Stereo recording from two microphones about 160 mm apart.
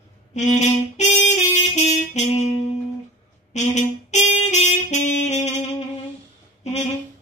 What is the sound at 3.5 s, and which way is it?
Saxophone, 45° left (ahead or behind).